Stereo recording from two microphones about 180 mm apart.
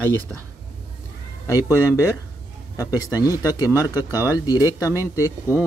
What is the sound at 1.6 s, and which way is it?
Speech, 10° right (ahead or behind).